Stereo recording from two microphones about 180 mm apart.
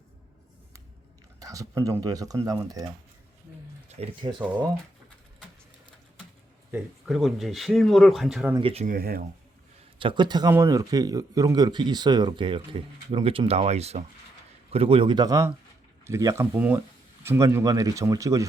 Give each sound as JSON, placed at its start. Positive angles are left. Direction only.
{"t": 1.4, "sound": "speech", "side_deg": -20}
{"t": 3.8, "sound": "speech", "side_deg": -35}
{"t": 6.7, "sound": "speech", "side_deg": -5}
{"t": 8.5, "sound": "speech", "side_deg": -30}
{"t": 8.9, "sound": "speech", "side_deg": -55}
{"t": 10.0, "sound": "speech", "side_deg": -25}